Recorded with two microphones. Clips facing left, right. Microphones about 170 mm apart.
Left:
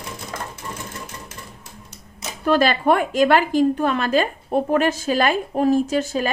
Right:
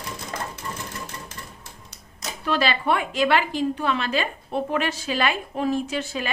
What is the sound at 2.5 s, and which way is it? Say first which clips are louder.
A woman's voice: left 6 dB; 45° left (ahead or behind).